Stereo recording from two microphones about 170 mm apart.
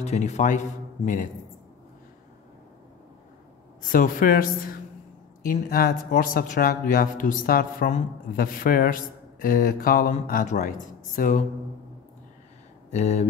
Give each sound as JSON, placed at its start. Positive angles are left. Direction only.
{"t": 0.0, "sound": "speech", "side_deg": 40}
{"t": 3.8, "sound": "speech", "side_deg": 55}
{"t": 12.9, "sound": "speech", "side_deg": 40}